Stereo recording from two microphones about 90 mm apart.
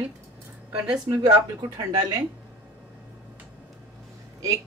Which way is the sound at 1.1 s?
45° right (ahead or behind).